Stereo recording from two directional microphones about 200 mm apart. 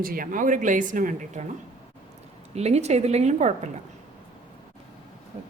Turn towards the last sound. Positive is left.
turn(degrees=-35)  # may be behind; listen again after turning